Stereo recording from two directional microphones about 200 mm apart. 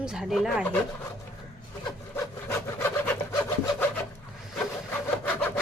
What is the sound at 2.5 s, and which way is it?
Wood, 10° left (ahead or behind).